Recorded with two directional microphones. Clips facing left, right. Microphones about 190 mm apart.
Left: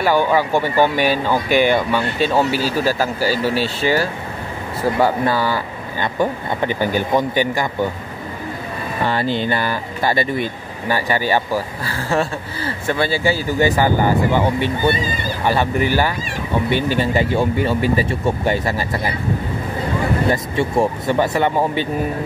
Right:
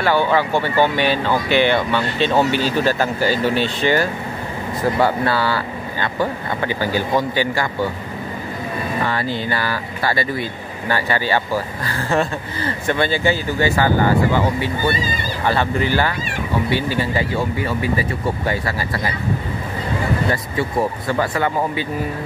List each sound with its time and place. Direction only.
0.0 s speech: 10° left (ahead or behind)
9.0 s speech: 25° left (ahead or behind)
17.0 s speech: 25° left (ahead or behind)
20.5 s speech: 25° left (ahead or behind)